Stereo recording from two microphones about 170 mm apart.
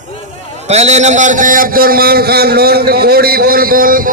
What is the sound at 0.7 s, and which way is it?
A man's voice, 40° right (ahead or behind).